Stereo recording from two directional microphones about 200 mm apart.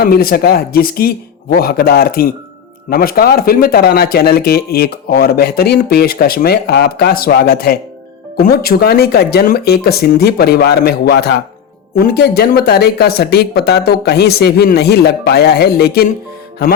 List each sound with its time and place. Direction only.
0.0 s speech: 50° left (ahead or behind)